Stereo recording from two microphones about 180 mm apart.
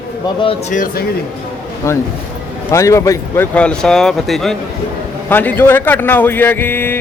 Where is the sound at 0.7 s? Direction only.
45° left (ahead or behind).